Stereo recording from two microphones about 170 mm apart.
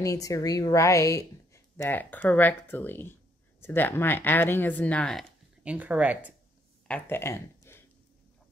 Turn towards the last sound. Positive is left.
turn(degrees=15)  # may be behind; listen again after turning